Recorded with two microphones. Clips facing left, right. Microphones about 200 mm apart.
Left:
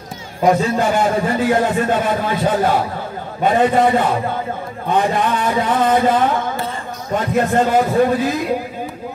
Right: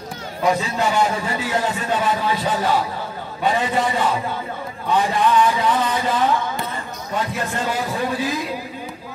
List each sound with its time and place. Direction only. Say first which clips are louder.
0.5 s a man's voice: left 5 dB; 50° left (ahead or behind)